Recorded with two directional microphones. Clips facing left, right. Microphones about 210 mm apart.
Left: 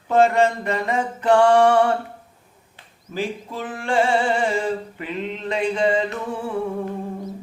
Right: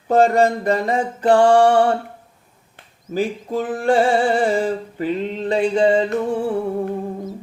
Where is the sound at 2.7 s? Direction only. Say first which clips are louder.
Right 6 dB; 45° right (ahead or behind).